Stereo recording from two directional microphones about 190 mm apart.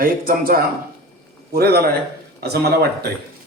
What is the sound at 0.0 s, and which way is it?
A man's voice, 50° right (ahead or behind).